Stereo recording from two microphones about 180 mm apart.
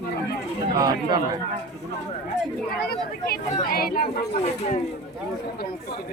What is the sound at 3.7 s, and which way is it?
Speech, 55° left (ahead or behind).